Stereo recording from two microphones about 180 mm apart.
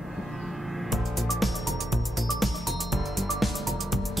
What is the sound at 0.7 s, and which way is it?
Music, centre (ahead or behind).